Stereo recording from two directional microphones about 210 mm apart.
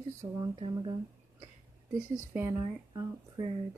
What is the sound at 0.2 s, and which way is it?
Speech, 20° right (ahead or behind).